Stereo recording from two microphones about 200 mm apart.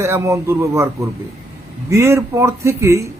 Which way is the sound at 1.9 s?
15° right (ahead or behind).